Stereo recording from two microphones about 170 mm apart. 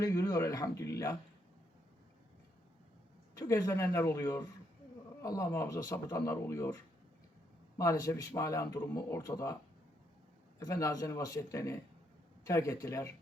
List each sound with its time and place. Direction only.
0.0 s speech: 20° left (ahead or behind)
3.3 s speech: 20° left (ahead or behind)
7.8 s speech: 20° left (ahead or behind)
10.6 s speech: 20° left (ahead or behind)